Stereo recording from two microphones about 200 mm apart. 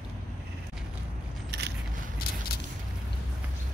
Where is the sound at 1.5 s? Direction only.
55° right (ahead or behind).